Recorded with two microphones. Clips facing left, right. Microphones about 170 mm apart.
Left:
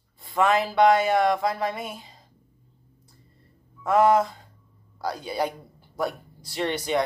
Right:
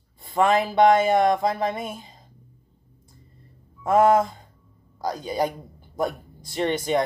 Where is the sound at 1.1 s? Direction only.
20° right (ahead or behind).